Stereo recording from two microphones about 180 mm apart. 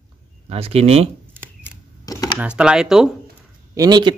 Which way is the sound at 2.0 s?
20° left (ahead or behind).